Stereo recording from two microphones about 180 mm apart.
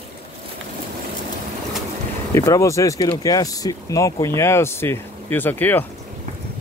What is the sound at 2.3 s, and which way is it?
Speech, 15° left (ahead or behind).